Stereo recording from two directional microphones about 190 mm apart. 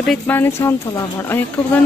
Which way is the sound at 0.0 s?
5° left (ahead or behind).